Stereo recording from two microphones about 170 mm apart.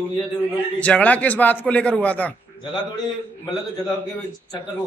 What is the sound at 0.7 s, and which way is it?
Speech, 10° left (ahead or behind).